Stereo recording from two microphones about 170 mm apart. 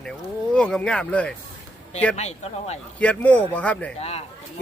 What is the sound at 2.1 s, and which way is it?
Speech, 40° left (ahead or behind).